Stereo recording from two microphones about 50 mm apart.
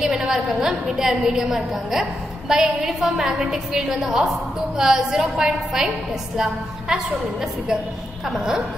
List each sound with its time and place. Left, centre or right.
0.0 s a woman's voice: centre
8.3 s a woman's voice: centre